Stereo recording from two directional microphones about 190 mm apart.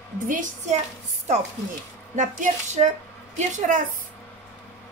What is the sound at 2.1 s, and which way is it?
Speech, 40° right (ahead or behind).